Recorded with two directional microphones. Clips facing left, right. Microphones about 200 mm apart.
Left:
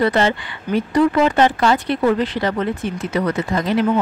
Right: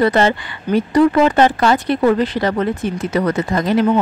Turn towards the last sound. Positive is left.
turn(degrees=-45)  # may be behind; listen again after turning